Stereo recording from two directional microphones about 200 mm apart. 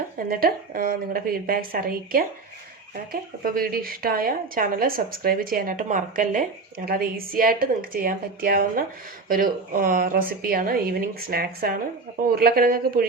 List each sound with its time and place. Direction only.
0.3 s speech: 45° right (ahead or behind)